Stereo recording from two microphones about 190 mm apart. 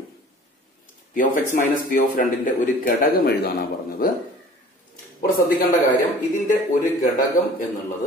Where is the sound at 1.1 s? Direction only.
45° left (ahead or behind).